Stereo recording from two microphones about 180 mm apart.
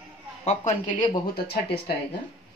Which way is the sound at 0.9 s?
25° left (ahead or behind).